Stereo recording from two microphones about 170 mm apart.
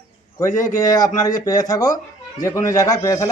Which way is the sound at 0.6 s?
20° left (ahead or behind).